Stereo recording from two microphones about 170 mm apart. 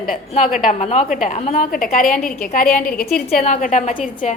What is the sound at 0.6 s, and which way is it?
A woman's voice, 40° left (ahead or behind).